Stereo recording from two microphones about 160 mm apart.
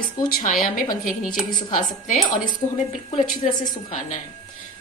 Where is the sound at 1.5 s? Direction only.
25° left (ahead or behind).